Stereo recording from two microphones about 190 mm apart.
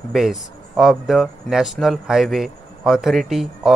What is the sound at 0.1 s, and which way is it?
Speech, centre (ahead or behind).